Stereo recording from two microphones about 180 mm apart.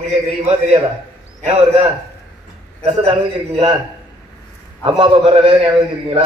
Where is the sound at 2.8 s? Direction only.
25° right (ahead or behind).